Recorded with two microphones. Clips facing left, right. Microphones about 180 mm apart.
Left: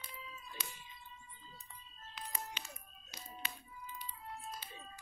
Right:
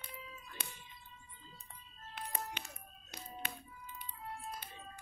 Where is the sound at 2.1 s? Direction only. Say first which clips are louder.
Right 3 dB; 55° right (ahead or behind).